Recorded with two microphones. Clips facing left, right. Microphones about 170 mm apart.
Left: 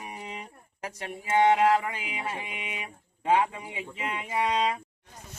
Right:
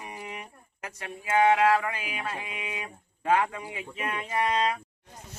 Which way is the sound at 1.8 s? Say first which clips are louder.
Right 1 dB; 25° left (ahead or behind).